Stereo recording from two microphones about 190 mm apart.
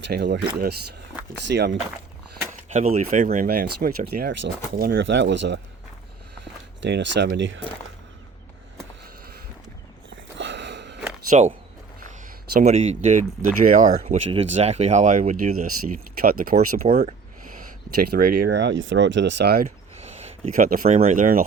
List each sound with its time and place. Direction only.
0.0 s speech: 65° right (ahead or behind)
2.6 s speech: 40° right (ahead or behind)
4.9 s speech: 70° right (ahead or behind)
6.8 s speech: 70° right (ahead or behind)
10.1 s a sound: 70° right (ahead or behind)
11.3 s speech: 40° right (ahead or behind)
12.5 s speech: 35° right (ahead or behind)
16.8 s speech: 35° right (ahead or behind); by 19.6 s 60° right (ahead or behind)
19.6 s a sound: 35° right (ahead or behind)
20.6 s speech: 45° right (ahead or behind)